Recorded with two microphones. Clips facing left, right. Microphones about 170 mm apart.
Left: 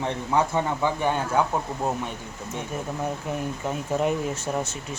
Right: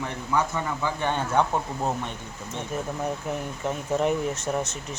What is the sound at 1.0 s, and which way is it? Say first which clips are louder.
Speech: right 1 dB; 5° left (ahead or behind).